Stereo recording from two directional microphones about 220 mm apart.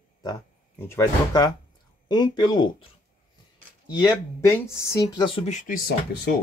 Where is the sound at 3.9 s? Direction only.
15° left (ahead or behind); by 6.3 s 40° left (ahead or behind).